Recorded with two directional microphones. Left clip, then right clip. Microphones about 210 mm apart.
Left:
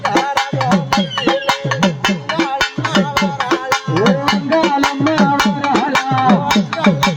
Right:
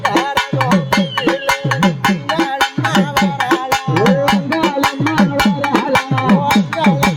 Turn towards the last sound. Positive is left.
turn(degrees=-55)  # may be behind; listen again after turning